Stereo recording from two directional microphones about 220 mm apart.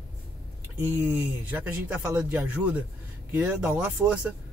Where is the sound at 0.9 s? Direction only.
10° right (ahead or behind).